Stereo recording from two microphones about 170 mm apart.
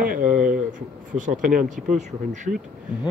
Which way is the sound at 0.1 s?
50° right (ahead or behind).